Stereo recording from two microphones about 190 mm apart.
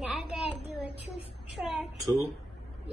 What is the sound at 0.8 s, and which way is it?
Speech, 30° left (ahead or behind).